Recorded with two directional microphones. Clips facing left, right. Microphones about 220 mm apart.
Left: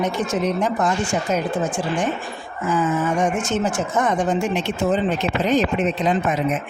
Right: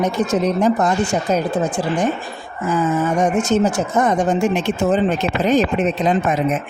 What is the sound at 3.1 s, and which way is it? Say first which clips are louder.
Speech: right 5 dB; 40° right (ahead or behind).